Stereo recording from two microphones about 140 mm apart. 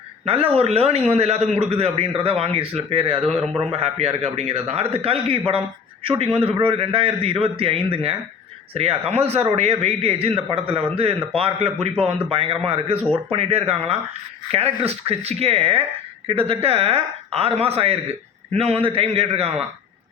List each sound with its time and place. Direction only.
0.3 s a man's voice: 45° right (ahead or behind)